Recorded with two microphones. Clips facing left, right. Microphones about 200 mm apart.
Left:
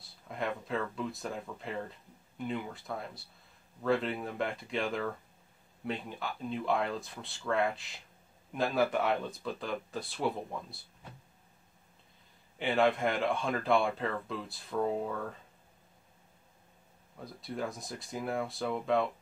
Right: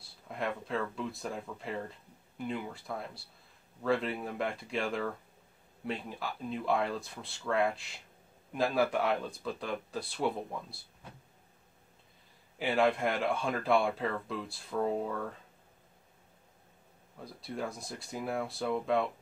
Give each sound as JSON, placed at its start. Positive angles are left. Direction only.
{"t": 0.3, "sound": "speech", "side_deg": 0}
{"t": 12.5, "sound": "speech", "side_deg": 0}
{"t": 17.4, "sound": "speech", "side_deg": 0}